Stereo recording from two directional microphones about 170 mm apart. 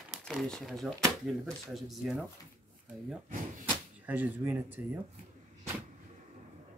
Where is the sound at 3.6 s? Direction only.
10° right (ahead or behind).